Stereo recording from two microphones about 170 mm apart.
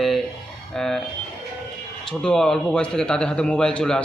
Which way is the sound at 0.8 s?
Centre (ahead or behind).